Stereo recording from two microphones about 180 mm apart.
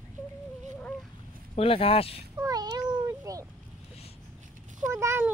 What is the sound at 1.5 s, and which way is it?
Speech, 30° left (ahead or behind).